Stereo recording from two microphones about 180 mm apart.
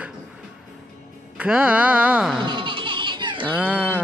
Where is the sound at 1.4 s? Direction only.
5° right (ahead or behind).